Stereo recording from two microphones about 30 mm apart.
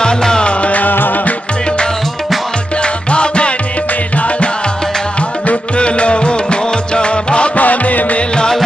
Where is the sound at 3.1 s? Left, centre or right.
Left.